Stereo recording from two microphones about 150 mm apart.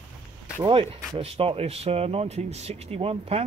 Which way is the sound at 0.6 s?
35° right (ahead or behind).